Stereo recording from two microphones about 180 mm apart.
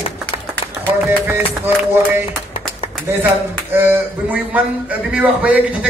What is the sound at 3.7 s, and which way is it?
A man's voice, 10° right (ahead or behind).